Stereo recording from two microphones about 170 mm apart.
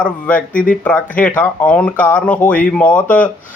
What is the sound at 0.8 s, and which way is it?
Speech, 10° left (ahead or behind).